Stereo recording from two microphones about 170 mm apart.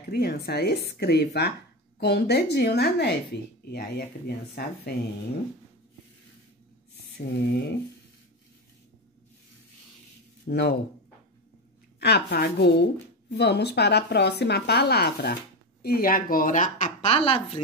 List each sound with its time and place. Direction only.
0.1 s speech: 70° left (ahead or behind)
4.3 s speech: 75° left (ahead or behind)
7.2 s speech: 75° left (ahead or behind)
10.4 s speech: 80° left
12.0 s speech: 70° left (ahead or behind)
15.8 s speech: 60° left (ahead or behind); by 17.4 s 35° left (ahead or behind)